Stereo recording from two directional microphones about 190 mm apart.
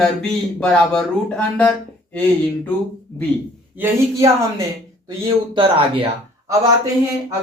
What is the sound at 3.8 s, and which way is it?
Speech, 15° right (ahead or behind).